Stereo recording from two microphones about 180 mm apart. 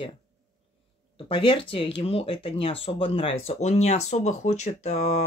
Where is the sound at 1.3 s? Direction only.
30° left (ahead or behind).